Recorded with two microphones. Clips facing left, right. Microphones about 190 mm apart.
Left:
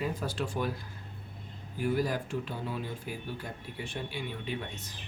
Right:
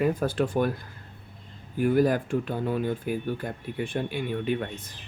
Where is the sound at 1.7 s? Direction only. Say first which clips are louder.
Right 8 dB; 55° right (ahead or behind).